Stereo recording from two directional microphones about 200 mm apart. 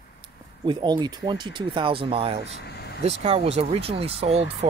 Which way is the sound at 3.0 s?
30° right (ahead or behind).